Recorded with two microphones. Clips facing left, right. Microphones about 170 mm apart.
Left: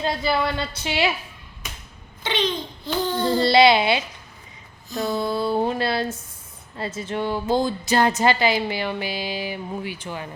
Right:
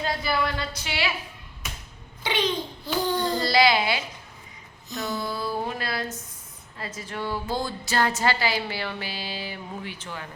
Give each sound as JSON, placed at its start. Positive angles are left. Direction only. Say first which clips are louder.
{"t": 0.0, "sound": "a woman's voice", "louder": "left 4 dB", "side_deg": 25}
{"t": 2.2, "sound": "a child's voice", "louder": "left 1 dB", "side_deg": -10}
{"t": 3.4, "sound": "a woman's voice", "louder": "left 6 dB", "side_deg": 25}